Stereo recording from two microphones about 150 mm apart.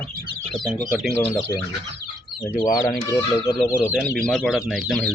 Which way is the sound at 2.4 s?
20° left (ahead or behind).